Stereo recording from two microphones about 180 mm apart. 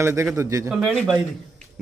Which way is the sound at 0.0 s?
15° right (ahead or behind).